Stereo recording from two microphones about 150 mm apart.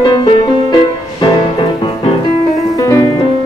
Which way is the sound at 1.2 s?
35° left (ahead or behind).